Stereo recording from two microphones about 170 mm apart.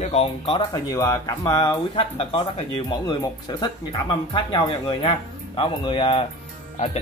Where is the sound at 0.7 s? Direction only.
20° left (ahead or behind).